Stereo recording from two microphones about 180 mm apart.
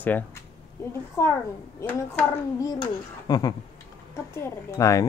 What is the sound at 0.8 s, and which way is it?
Speech, 15° left (ahead or behind).